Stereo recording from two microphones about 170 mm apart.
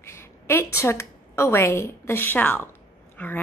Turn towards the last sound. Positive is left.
turn(degrees=10)  # may be behind; listen again after turning